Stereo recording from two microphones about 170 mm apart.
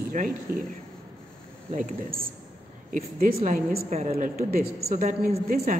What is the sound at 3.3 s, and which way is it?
A woman's voice, 45° right (ahead or behind).